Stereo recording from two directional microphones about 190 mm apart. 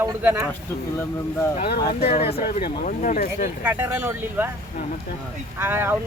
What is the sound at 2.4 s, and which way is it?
Speech, 45° left (ahead or behind).